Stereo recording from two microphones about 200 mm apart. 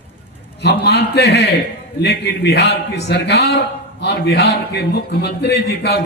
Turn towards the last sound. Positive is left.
turn(degrees=55)  # may be behind; listen again after turning